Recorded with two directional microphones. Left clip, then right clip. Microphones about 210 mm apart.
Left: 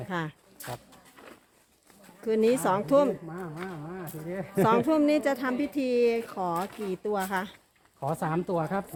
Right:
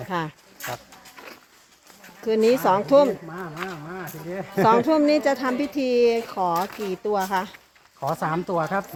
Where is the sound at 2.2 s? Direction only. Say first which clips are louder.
Right 6 dB; 20° right (ahead or behind).